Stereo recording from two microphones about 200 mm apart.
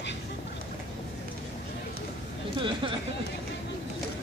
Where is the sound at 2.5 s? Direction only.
25° right (ahead or behind).